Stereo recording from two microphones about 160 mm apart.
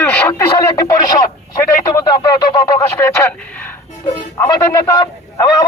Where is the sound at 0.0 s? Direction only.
10° left (ahead or behind).